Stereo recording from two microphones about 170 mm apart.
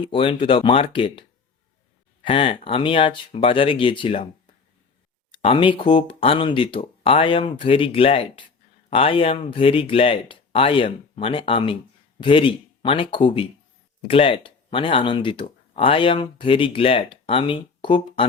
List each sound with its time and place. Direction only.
0.1 s speech: 30° left (ahead or behind)
2.2 s speech: 35° left (ahead or behind)